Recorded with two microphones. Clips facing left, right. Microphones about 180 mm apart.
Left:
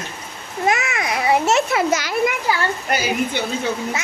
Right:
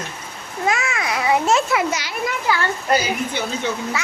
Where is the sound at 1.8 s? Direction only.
45° left (ahead or behind).